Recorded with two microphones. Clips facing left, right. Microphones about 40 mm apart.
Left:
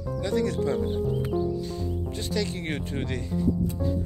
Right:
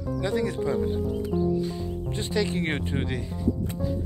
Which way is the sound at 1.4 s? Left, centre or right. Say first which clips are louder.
Right 3 dB; centre.